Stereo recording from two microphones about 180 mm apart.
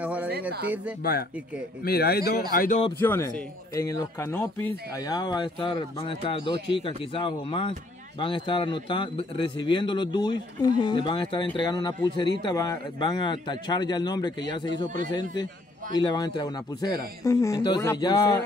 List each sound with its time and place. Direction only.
0.0 s a sound: 10° right (ahead or behind)
1.9 s speech: 60° left (ahead or behind)
3.0 s a man's voice: 15° left (ahead or behind)
15.9 s speech: 25° left (ahead or behind)